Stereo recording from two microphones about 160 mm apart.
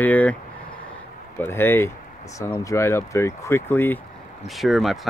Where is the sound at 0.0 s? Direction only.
10° left (ahead or behind).